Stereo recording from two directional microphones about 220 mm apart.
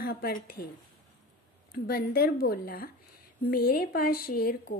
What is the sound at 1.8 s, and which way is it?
A woman's voice, 40° left (ahead or behind).